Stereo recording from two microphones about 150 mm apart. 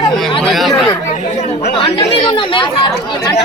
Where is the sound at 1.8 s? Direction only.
30° left (ahead or behind).